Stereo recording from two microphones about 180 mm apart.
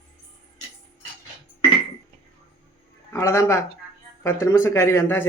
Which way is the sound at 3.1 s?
15° left (ahead or behind).